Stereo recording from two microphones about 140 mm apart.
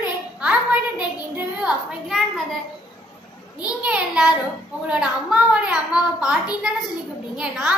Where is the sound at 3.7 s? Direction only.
10° right (ahead or behind).